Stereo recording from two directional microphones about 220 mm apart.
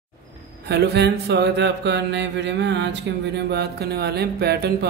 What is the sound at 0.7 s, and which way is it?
Mantra, 50° right (ahead or behind).